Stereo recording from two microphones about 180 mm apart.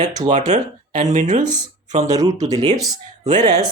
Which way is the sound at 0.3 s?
40° right (ahead or behind).